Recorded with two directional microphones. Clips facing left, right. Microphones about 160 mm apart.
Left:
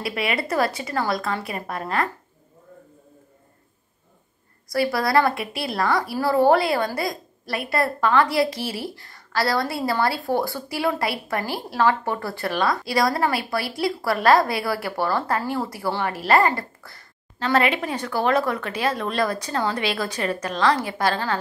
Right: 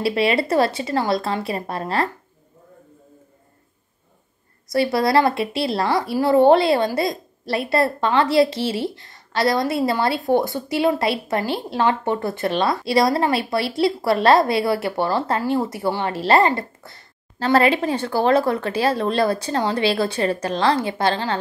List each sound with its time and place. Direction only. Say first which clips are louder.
0.0 s a woman's voice: right 7 dB; 30° right (ahead or behind)
4.6 s a woman's voice: right 3 dB; 25° right (ahead or behind)
17.4 s a woman's voice: right 4 dB; 35° right (ahead or behind)